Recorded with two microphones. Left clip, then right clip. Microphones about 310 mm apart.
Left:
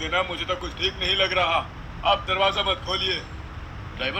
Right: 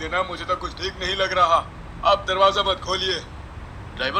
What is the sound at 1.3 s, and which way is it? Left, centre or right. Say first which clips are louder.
A man's voice: right 4 dB; centre.